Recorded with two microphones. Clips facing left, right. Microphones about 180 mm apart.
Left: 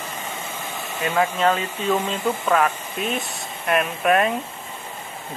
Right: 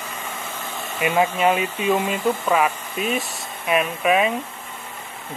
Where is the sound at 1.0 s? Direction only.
20° right (ahead or behind).